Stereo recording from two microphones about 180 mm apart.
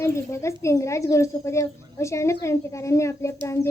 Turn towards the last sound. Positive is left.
turn(degrees=15)  # may be behind; listen again after turning